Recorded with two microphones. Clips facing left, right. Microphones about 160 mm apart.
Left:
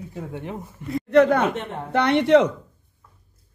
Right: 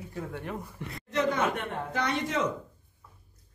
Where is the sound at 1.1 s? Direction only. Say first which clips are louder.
Left 10 dB; 60° left (ahead or behind).